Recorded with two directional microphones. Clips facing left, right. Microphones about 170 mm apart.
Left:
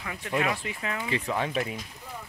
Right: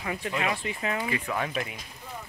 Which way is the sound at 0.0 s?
15° right (ahead or behind).